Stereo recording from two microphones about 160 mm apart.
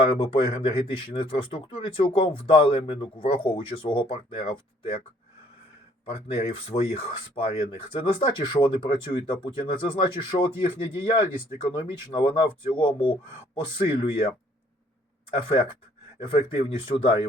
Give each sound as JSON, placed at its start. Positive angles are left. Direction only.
{"t": 0.0, "sound": "speech", "side_deg": 35}
{"t": 6.1, "sound": "speech", "side_deg": 35}
{"t": 16.2, "sound": "speech", "side_deg": 30}